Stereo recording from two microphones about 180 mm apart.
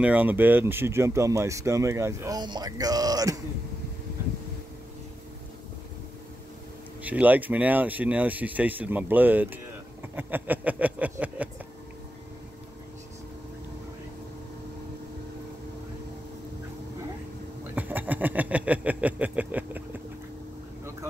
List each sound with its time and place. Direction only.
0.0 s speech: 10° right (ahead or behind)
7.0 s speech: 10° right (ahead or behind)
17.7 s a sound: 10° right (ahead or behind)